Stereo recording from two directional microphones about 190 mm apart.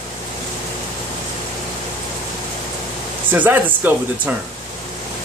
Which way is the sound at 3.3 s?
10° right (ahead or behind).